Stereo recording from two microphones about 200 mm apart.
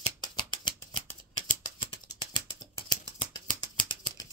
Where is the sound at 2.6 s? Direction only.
20° left (ahead or behind).